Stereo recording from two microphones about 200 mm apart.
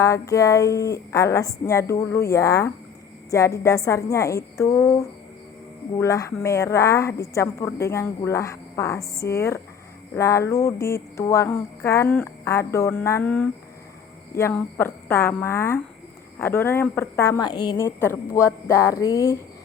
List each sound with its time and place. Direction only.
0.0 s a woman's voice: 15° left (ahead or behind)